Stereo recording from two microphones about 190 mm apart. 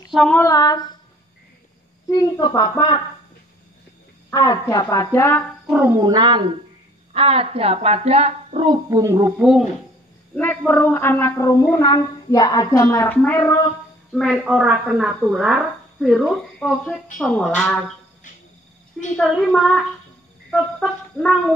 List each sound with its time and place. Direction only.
0.1 s female singing: centre (ahead or behind)
0.4 s a woman's voice: 20° left (ahead or behind)
2.0 s a woman's voice: 20° left (ahead or behind)
4.3 s a woman's voice: 20° left (ahead or behind)
5.7 s cat: 10° right (ahead or behind)
5.9 s a woman's voice: 20° right (ahead or behind)
9.4 s speech: 5° right (ahead or behind)
10.3 s a woman's voice: 10° left (ahead or behind)
19.1 s speech: centre (ahead or behind)
20.5 s a sound: centre (ahead or behind)